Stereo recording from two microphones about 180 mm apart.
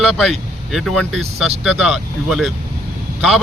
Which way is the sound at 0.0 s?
Centre (ahead or behind).